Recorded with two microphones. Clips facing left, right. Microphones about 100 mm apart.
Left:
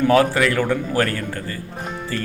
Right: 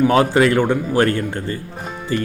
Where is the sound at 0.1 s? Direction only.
25° right (ahead or behind).